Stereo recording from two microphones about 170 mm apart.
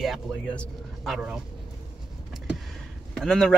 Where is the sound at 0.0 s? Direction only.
Centre (ahead or behind).